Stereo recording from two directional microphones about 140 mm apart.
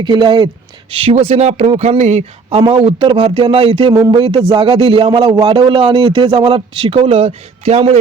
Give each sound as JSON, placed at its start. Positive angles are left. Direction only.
{"t": 0.0, "sound": "speech", "side_deg": -35}
{"t": 3.9, "sound": "speech", "side_deg": -25}
{"t": 4.4, "sound": "speech", "side_deg": -40}